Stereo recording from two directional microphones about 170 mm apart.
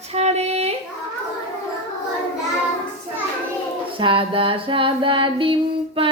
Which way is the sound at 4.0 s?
30° right (ahead or behind).